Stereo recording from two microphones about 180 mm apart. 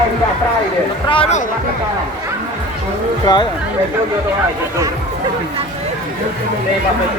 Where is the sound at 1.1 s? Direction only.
30° left (ahead or behind).